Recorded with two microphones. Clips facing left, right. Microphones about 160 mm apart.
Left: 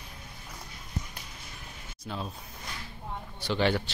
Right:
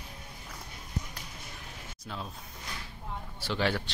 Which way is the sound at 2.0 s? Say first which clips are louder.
Left 4 dB; centre (ahead or behind).